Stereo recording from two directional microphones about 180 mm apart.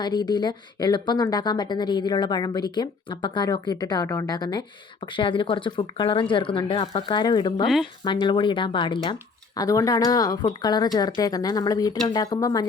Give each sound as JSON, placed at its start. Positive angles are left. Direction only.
{"t": 0.0, "sound": "speech", "side_deg": 25}